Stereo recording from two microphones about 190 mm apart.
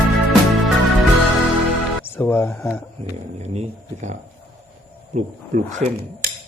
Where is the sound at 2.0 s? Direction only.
10° left (ahead or behind).